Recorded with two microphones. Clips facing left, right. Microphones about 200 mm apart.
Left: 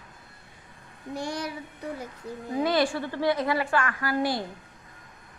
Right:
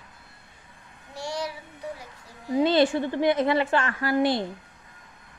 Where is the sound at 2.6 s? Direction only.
25° right (ahead or behind).